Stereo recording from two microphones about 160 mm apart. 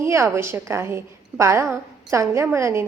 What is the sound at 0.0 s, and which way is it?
A woman's voice, 15° right (ahead or behind).